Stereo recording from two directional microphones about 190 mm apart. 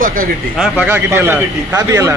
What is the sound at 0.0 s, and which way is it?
Speech, 45° right (ahead or behind).